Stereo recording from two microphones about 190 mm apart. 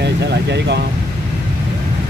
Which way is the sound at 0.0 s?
65° right (ahead or behind).